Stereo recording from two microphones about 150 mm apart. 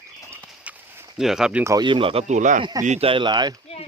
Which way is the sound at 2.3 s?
55° right (ahead or behind).